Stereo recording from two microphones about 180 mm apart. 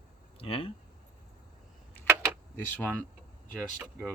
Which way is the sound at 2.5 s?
10° left (ahead or behind).